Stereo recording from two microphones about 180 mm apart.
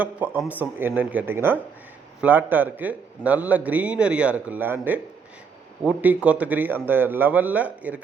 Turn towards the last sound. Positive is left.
turn(degrees=-10)  # may be behind; listen again after turning